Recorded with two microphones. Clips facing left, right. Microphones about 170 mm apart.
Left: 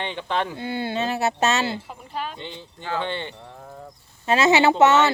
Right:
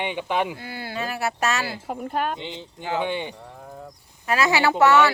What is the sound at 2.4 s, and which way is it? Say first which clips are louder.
Speech: right 2 dB; 15° right (ahead or behind).